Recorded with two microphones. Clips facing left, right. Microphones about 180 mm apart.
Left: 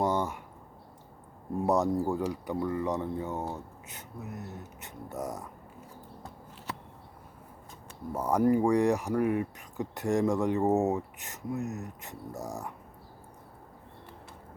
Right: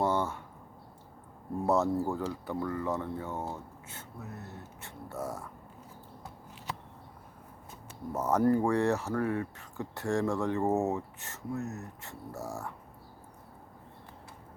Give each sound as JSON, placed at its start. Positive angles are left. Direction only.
{"t": 0.0, "sound": "a sound", "side_deg": 15}
{"t": 1.6, "sound": "speech", "side_deg": 15}
{"t": 8.1, "sound": "speech", "side_deg": 10}